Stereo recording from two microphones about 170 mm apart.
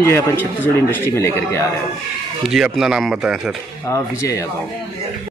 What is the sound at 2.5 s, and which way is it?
Speech, 5° right (ahead or behind).